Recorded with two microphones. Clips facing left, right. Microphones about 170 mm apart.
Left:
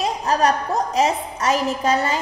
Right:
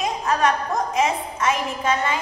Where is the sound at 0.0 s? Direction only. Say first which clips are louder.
Left 2 dB; 35° left (ahead or behind).